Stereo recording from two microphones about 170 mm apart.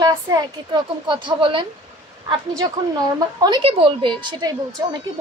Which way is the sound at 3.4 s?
30° right (ahead or behind).